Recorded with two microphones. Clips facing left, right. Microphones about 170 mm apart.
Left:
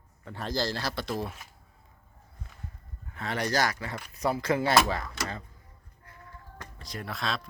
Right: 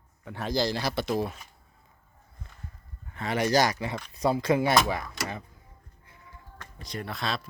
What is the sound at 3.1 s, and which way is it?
Speech, centre (ahead or behind).